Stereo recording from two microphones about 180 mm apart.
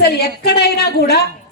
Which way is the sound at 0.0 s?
60° left (ahead or behind).